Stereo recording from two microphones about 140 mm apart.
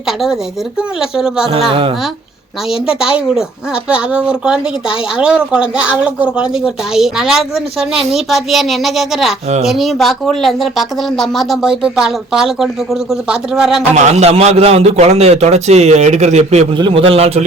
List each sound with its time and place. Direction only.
0.8 s speech: 5° right (ahead or behind)
2.8 s speech: 5° right (ahead or behind)
13.9 s a man's voice: 55° right (ahead or behind)
16.7 s a man's voice: 35° right (ahead or behind)